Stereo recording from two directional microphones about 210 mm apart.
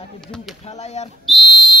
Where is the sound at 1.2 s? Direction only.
Centre (ahead or behind).